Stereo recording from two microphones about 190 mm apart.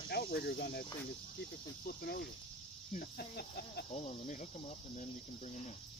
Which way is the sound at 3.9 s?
40° left (ahead or behind).